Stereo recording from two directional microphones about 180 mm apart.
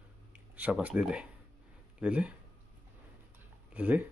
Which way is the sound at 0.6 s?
10° right (ahead or behind).